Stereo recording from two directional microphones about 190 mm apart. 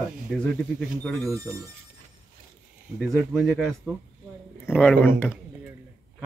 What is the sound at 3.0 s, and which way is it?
A man's voice, centre (ahead or behind).